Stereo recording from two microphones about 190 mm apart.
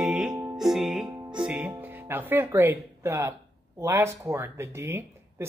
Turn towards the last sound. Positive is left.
turn(degrees=-15)  # may be behind; listen again after turning